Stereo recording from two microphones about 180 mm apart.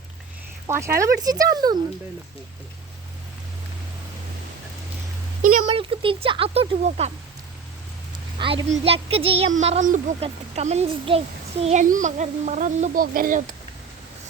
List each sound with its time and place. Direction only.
0.7 s speech: 15° right (ahead or behind)
5.4 s a sound: 45° right (ahead or behind)
5.6 s speech: 30° right (ahead or behind)
8.4 s a child's voice: 25° right (ahead or behind)
11.6 s a child's voice: 40° right (ahead or behind)